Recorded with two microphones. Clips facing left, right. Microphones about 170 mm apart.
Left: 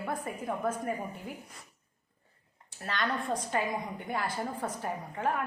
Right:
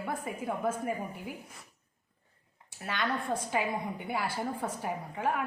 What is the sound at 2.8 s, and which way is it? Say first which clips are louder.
A woman's voice: even; 5° right (ahead or behind).